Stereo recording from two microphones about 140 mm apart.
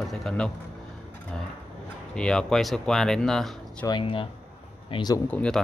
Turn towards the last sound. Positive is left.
turn(degrees=10)  # may be behind; listen again after turning